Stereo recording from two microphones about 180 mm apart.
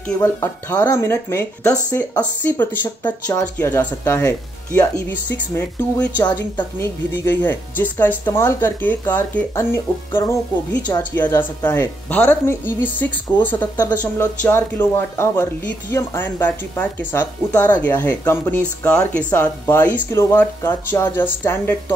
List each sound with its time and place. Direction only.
0.2 s speech: 20° left (ahead or behind)
6.2 s a woman's voice: 25° left (ahead or behind)
7.2 s speech: 10° left (ahead or behind)